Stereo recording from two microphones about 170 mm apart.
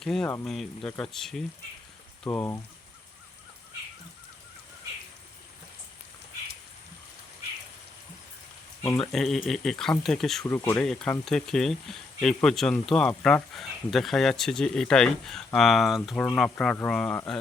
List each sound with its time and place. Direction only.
0.0 s speech: centre (ahead or behind)
2.3 s speech: 10° left (ahead or behind)
9.0 s speech: centre (ahead or behind)
10.4 s speech: 20° left (ahead or behind)
10.8 s speech: 5° left (ahead or behind)